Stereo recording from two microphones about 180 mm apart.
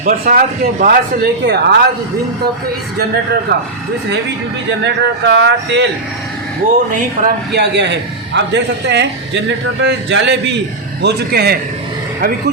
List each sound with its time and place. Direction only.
0.0 s speech: 50° right (ahead or behind); by 1.8 s 65° right (ahead or behind)
4.8 s a man's voice: 75° right (ahead or behind)
7.2 s speech: 45° right (ahead or behind)
7.5 s a man's voice: 70° right (ahead or behind)
11.0 s speech: 60° right (ahead or behind)